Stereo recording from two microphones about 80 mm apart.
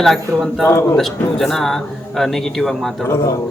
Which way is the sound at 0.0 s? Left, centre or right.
Centre.